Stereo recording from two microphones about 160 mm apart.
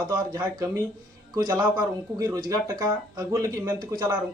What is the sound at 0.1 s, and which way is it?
A man's voice, 20° right (ahead or behind).